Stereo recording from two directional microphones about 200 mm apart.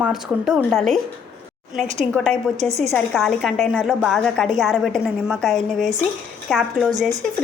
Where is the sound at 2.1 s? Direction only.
5° left (ahead or behind).